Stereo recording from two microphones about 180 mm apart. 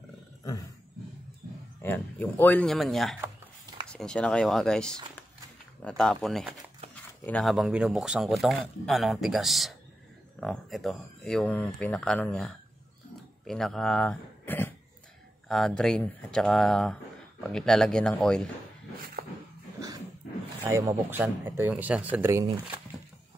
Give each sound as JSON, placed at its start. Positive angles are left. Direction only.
{"t": 0.4, "sound": "roaring cats", "side_deg": 20}
{"t": 1.8, "sound": "speech", "side_deg": 10}
{"t": 20.6, "sound": "speech", "side_deg": -15}